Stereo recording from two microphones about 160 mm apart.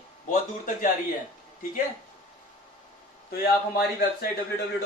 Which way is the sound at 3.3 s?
85° left.